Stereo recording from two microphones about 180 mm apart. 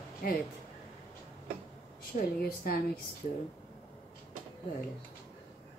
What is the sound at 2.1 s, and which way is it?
Speech, 45° left (ahead or behind).